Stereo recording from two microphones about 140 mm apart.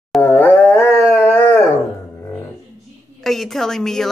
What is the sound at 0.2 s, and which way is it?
Howl, 10° left (ahead or behind).